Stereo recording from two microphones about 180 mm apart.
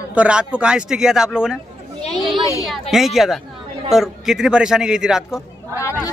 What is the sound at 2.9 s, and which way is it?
Speech, centre (ahead or behind).